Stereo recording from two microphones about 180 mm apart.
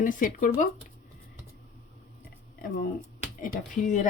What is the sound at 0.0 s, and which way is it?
Speech, 50° left (ahead or behind).